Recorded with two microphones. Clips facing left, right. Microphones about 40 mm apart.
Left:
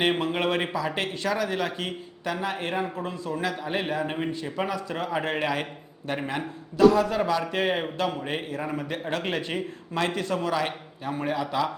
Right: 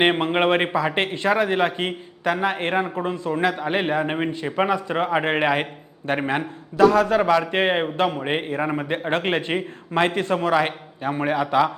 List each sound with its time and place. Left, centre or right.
0.0 s a man's voice: right